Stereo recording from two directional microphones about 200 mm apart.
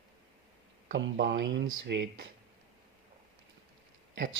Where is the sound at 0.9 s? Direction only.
60° right (ahead or behind).